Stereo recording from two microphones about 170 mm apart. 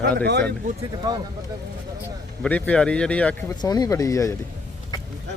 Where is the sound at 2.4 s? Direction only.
10° left (ahead or behind).